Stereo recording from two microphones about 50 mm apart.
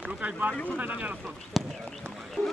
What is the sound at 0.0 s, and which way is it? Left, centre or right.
Speech, right.